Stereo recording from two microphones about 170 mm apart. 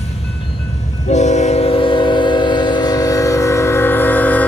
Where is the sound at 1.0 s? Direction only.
45° left (ahead or behind).